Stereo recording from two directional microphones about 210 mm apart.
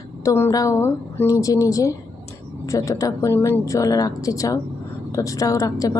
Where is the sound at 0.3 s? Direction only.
15° left (ahead or behind).